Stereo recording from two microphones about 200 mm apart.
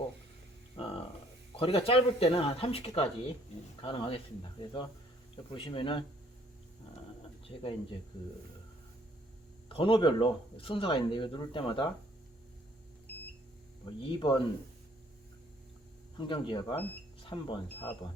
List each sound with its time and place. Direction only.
0.8 s a sound: 25° left (ahead or behind)
1.5 s speech: 30° left (ahead or behind)
5.5 s speech: 25° left (ahead or behind)
7.2 s a sound: 25° left (ahead or behind)
9.6 s speech: 25° left (ahead or behind)
14.0 s speech: 25° left (ahead or behind)
16.1 s speech: 25° left (ahead or behind)